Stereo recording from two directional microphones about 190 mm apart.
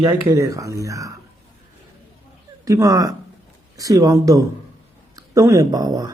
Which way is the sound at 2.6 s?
15° right (ahead or behind).